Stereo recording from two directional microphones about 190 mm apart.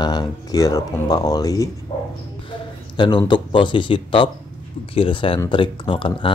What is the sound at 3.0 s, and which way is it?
Speech, 25° left (ahead or behind).